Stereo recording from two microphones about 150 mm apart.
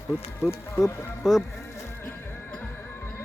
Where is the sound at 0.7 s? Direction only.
20° left (ahead or behind).